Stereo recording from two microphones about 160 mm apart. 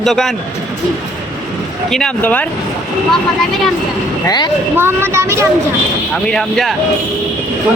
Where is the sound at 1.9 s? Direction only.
5° left (ahead or behind).